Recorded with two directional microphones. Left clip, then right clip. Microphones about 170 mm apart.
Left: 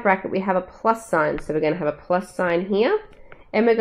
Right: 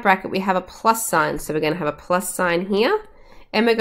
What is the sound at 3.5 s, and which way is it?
Speech, 35° right (ahead or behind).